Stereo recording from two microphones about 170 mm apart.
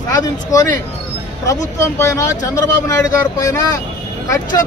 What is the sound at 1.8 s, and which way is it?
A man's voice, 15° left (ahead or behind).